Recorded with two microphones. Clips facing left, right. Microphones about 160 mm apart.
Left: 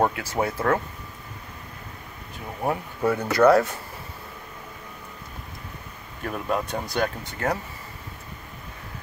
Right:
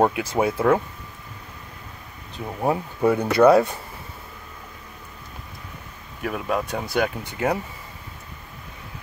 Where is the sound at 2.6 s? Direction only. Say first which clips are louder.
Right 4 dB; 20° right (ahead or behind).